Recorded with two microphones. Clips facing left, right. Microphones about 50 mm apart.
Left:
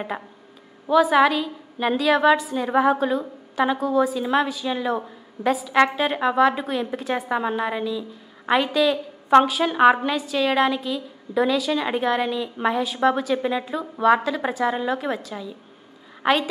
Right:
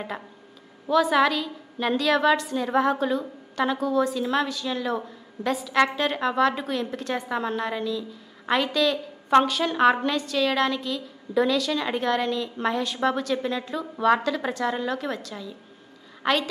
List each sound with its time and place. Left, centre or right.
0.8 s a woman's voice: centre